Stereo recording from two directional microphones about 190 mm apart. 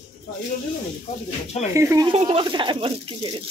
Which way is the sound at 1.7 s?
15° right (ahead or behind).